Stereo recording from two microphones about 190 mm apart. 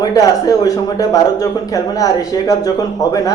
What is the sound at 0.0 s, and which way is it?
Speech, 20° left (ahead or behind).